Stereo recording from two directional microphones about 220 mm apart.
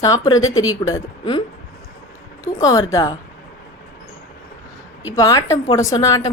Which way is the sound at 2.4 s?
15° left (ahead or behind).